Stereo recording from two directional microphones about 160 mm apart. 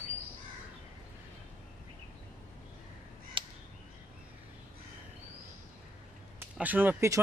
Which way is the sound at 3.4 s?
30° right (ahead or behind).